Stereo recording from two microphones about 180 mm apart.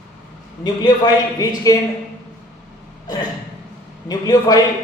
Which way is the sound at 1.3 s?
20° left (ahead or behind).